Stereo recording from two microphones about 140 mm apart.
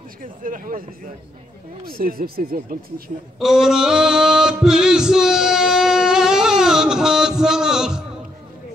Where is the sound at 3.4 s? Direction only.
5° right (ahead or behind).